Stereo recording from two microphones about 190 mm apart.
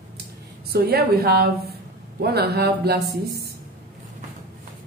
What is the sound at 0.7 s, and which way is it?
A woman's voice, 55° right (ahead or behind).